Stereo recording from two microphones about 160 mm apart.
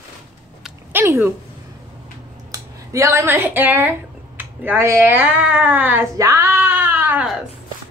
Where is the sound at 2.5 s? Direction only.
20° right (ahead or behind).